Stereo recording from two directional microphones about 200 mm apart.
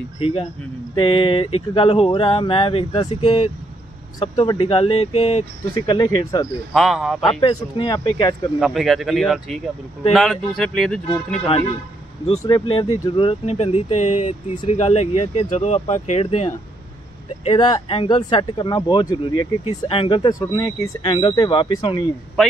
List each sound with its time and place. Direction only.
0.2 s speech: 30° left (ahead or behind)
6.7 s speech: centre (ahead or behind)
7.3 s speech: 25° left (ahead or behind)
8.5 s speech: centre (ahead or behind)
12.3 s speech: 25° left (ahead or behind)
17.5 s speech: 25° left (ahead or behind)